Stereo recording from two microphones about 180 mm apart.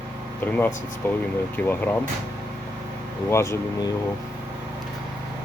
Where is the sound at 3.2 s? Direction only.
15° left (ahead or behind).